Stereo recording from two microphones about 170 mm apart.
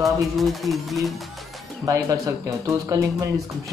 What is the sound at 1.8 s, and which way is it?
Speech, 20° right (ahead or behind).